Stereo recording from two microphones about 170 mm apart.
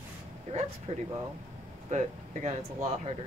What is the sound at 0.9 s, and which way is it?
Speech, 35° right (ahead or behind).